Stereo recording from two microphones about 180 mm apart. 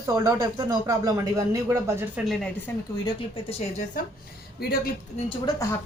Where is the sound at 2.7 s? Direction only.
15° left (ahead or behind).